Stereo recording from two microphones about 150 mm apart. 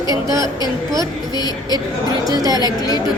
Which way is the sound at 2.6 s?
25° left (ahead or behind).